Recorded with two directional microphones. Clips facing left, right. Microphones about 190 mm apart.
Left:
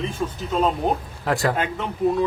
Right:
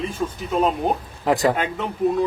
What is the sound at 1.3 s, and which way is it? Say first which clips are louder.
Speech: right 4 dB; 20° right (ahead or behind).